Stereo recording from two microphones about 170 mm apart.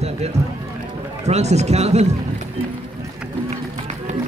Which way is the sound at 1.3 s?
40° right (ahead or behind).